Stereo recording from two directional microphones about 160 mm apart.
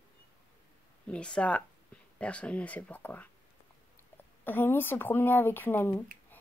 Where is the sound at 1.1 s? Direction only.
5° left (ahead or behind).